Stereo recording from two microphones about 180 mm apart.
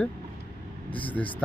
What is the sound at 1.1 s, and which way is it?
Speech, 10° left (ahead or behind).